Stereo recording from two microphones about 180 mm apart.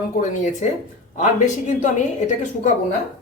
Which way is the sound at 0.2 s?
45° left (ahead or behind).